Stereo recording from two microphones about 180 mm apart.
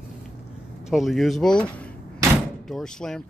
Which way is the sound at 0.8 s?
Centre (ahead or behind).